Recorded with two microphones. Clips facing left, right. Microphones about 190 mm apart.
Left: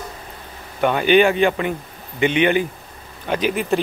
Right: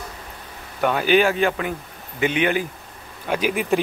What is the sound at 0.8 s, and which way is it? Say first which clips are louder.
Speech: left 3 dB; centre (ahead or behind).